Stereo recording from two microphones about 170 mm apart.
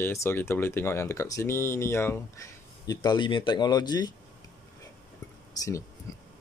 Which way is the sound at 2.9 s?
25° left (ahead or behind).